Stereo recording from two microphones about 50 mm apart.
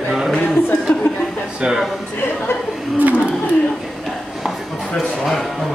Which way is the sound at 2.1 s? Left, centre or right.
Left.